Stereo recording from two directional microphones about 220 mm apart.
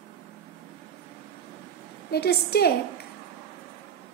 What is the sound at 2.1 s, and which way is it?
Speech, 45° left (ahead or behind).